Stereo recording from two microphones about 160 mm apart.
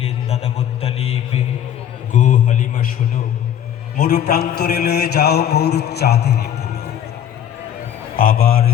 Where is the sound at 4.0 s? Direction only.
75° left (ahead or behind); by 6.8 s 90° left.